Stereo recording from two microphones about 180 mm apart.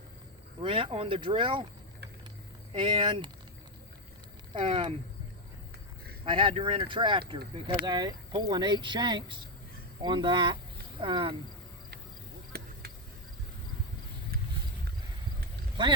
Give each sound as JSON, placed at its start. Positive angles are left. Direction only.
{"t": 0.6, "sound": "speech", "side_deg": -30}
{"t": 2.7, "sound": "speech", "side_deg": -25}
{"t": 4.5, "sound": "speech", "side_deg": -30}
{"t": 6.2, "sound": "speech", "side_deg": -30}
{"t": 12.5, "sound": "a sound", "side_deg": -55}